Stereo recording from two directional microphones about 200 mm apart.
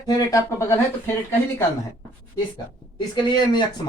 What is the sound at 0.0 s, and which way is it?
Speech, 15° left (ahead or behind).